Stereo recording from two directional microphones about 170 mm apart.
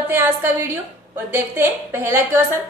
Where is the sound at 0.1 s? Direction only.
15° right (ahead or behind).